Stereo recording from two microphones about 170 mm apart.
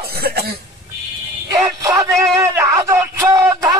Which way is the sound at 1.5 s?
20° right (ahead or behind).